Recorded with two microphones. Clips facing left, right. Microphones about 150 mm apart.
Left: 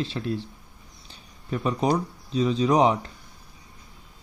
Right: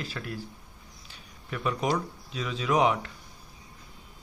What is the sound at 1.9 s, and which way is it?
Speech, 35° left (ahead or behind).